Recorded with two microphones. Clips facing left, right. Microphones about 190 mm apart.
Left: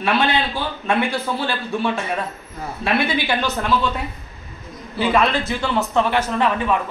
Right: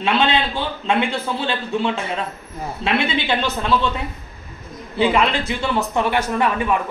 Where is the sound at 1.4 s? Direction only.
20° right (ahead or behind).